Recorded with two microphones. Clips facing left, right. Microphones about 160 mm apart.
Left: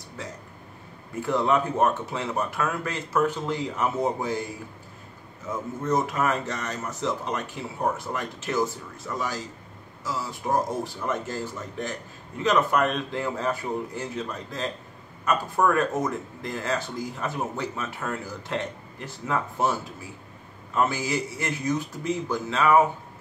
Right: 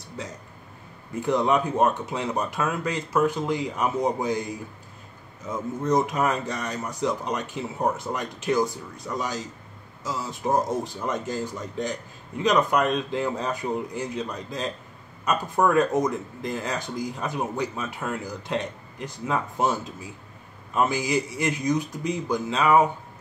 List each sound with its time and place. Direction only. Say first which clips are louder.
1.2 s speech: right 1 dB; 15° right (ahead or behind)